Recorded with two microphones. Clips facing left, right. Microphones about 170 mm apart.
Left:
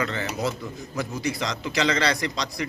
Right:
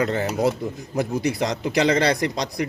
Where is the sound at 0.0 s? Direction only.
50° right (ahead or behind).